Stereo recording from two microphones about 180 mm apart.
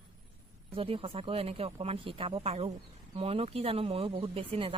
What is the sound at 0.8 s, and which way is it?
A woman's voice, 30° right (ahead or behind).